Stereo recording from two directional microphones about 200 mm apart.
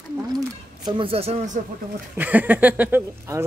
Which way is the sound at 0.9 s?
25° right (ahead or behind).